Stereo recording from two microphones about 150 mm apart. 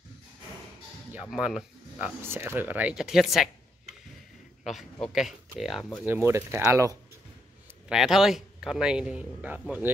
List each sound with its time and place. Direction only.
1.3 s speech: 5° right (ahead or behind)
5.0 s a man's voice: centre (ahead or behind)
6.0 s speech: 15° right (ahead or behind)
7.9 s a man's voice: centre (ahead or behind)